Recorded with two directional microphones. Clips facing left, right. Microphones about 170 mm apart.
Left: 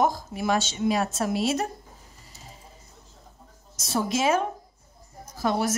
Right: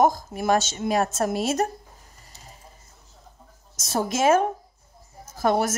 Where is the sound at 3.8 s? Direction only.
45° right (ahead or behind).